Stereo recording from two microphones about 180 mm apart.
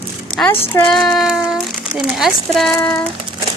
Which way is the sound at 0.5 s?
30° left (ahead or behind).